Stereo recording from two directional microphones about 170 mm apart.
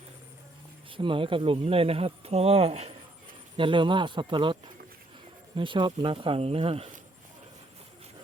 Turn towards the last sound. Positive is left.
turn(degrees=-35)  # may be behind; listen again after turning